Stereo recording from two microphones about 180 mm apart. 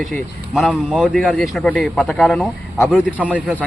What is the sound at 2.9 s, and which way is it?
Speech, 10° right (ahead or behind).